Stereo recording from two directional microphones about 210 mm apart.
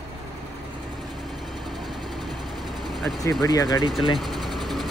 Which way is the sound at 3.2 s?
15° left (ahead or behind).